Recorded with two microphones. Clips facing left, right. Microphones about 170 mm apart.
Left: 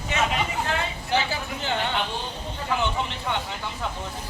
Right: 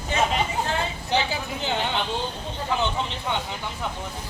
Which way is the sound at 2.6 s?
20° right (ahead or behind).